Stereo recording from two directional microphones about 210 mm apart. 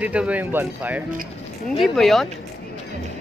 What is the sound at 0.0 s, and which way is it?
A woman's voice, 5° right (ahead or behind).